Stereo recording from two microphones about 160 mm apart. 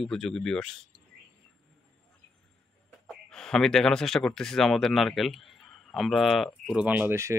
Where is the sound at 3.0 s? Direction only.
5° left (ahead or behind).